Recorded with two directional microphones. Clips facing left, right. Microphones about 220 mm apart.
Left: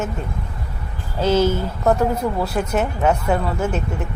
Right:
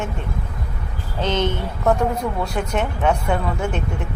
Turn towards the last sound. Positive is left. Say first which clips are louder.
# left 2 dB
turn(degrees=5)  # may be behind; listen again after turning